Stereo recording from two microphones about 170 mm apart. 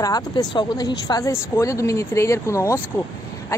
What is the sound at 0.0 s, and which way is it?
A woman's voice, 25° left (ahead or behind).